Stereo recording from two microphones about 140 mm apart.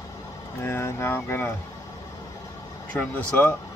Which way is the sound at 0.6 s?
20° left (ahead or behind).